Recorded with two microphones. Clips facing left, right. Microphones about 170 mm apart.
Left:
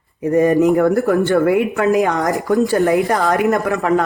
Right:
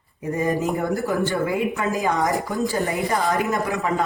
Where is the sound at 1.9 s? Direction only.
80° left.